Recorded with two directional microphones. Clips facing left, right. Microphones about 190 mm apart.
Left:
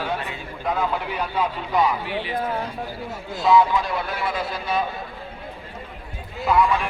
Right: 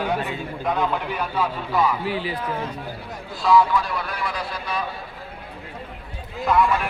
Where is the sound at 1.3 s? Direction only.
20° left (ahead or behind).